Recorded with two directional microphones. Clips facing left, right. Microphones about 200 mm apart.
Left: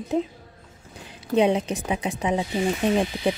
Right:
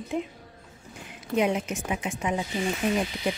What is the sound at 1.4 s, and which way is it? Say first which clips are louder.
A woman's voice: left 5 dB; 30° left (ahead or behind).